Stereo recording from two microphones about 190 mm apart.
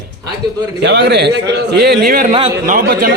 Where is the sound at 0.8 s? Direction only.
60° right (ahead or behind).